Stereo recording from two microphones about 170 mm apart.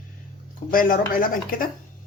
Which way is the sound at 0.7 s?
55° left (ahead or behind).